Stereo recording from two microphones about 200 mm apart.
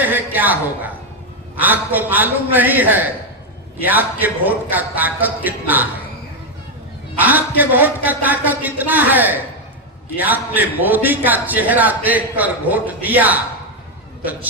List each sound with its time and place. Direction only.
0.0 s a man's voice: 10° right (ahead or behind)
7.2 s a man's voice: 10° right (ahead or behind)